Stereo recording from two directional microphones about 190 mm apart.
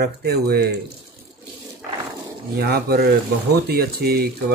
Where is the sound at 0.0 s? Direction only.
55° right (ahead or behind).